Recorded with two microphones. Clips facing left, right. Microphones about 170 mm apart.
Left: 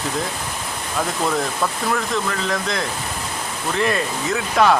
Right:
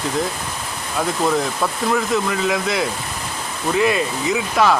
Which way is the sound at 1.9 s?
5° right (ahead or behind).